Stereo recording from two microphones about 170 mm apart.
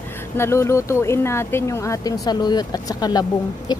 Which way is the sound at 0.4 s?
15° left (ahead or behind).